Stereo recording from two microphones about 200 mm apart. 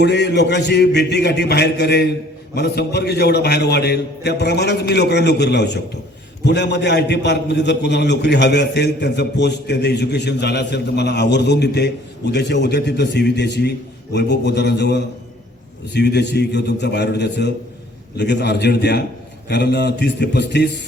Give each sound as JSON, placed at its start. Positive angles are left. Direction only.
{"t": 0.0, "sound": "a man's voice", "side_deg": 55}